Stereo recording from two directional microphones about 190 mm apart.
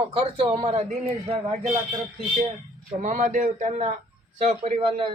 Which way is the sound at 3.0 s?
40° right (ahead or behind).